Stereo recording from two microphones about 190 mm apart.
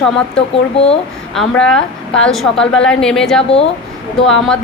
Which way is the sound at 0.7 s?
30° left (ahead or behind).